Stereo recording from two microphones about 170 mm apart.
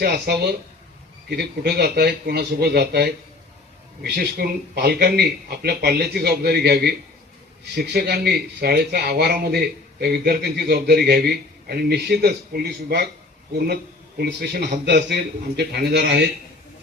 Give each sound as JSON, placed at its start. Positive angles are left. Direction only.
{"t": 0.0, "sound": "speech", "side_deg": -70}
{"t": 14.2, "sound": "a man's voice", "side_deg": -75}